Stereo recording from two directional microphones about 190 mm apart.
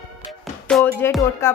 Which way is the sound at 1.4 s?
15° left (ahead or behind).